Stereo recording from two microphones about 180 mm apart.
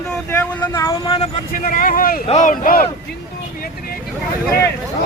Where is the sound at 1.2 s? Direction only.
45° left (ahead or behind).